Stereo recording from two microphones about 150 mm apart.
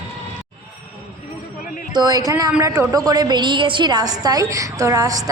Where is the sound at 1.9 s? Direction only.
25° right (ahead or behind).